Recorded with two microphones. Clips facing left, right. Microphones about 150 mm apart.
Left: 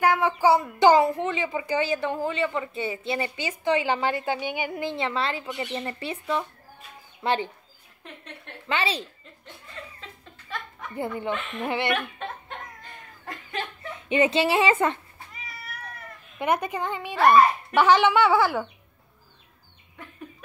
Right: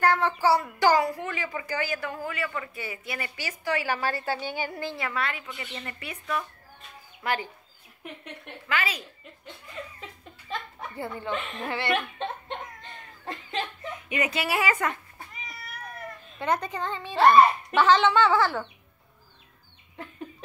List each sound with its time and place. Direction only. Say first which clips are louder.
0.0 s a child's voice: left 2 dB; 10° left (ahead or behind)
8.6 s a woman's voice: left 3 dB; 30° left (ahead or behind)
9.8 s speech: right 3 dB; 10° right (ahead or behind)
11.0 s a woman's voice: left 3 dB; 20° left (ahead or behind)
11.9 s a sound: right 1 dB; 25° right (ahead or behind)
13.9 s a woman's voice: left 8 dB; 30° left (ahead or behind)
16.3 s speech: left 3 dB; 15° left (ahead or behind)